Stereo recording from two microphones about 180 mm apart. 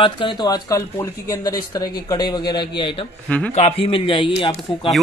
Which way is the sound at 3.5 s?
35° left (ahead or behind).